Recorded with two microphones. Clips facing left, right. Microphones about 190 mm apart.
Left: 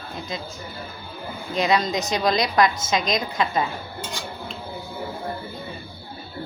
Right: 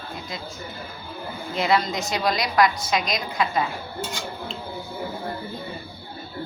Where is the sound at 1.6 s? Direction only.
20° left (ahead or behind).